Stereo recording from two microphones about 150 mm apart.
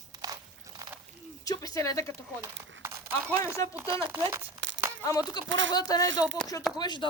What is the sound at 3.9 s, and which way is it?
Speech, 35° right (ahead or behind).